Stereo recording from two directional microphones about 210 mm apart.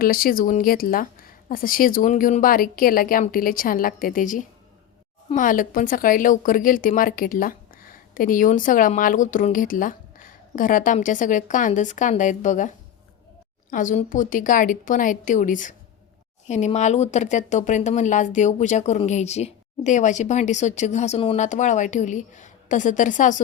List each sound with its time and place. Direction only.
0.0 s a woman's voice: 45° left (ahead or behind)